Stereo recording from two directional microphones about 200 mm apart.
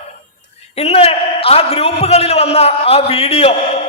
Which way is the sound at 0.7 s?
30° left (ahead or behind).